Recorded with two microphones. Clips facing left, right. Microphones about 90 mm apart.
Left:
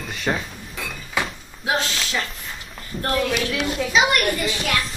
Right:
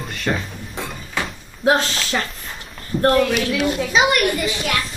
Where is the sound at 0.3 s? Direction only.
10° left (ahead or behind).